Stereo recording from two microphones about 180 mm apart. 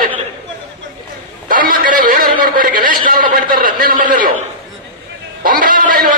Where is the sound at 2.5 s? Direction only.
50° right (ahead or behind).